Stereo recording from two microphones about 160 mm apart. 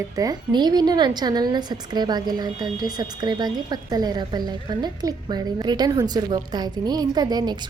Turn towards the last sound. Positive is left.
turn(degrees=-25)  # may be behind; listen again after turning